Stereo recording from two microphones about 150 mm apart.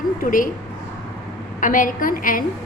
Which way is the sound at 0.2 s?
65° left (ahead or behind).